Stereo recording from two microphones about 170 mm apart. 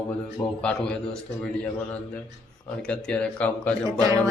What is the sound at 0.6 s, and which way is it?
Speech, 5° left (ahead or behind).